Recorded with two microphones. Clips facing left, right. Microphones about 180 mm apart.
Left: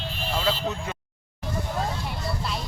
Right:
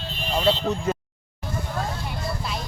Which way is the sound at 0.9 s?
40° right (ahead or behind).